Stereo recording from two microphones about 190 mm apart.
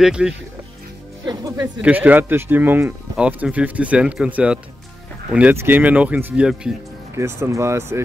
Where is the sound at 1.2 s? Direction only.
20° right (ahead or behind).